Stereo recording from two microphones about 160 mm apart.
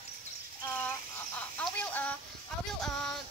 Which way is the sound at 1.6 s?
10° left (ahead or behind).